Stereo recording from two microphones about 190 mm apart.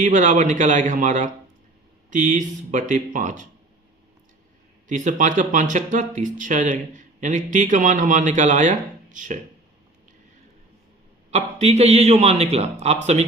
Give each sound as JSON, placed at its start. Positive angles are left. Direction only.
{"t": 0.0, "sound": "speech", "side_deg": -40}
{"t": 4.9, "sound": "speech", "side_deg": -40}
{"t": 11.3, "sound": "speech", "side_deg": -35}